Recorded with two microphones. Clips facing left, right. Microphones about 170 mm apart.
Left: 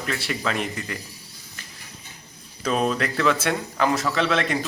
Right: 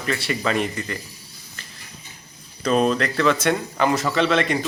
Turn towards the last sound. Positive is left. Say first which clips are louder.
# right 3 dB
turn(degrees=0)  # may be behind; listen again after turning